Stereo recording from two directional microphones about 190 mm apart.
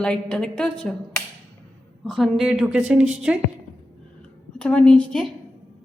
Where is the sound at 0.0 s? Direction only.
5° left (ahead or behind).